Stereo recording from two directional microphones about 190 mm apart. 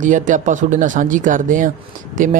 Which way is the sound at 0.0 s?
40° right (ahead or behind).